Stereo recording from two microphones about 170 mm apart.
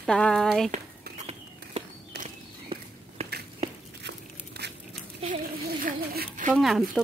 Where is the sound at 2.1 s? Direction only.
75° right (ahead or behind).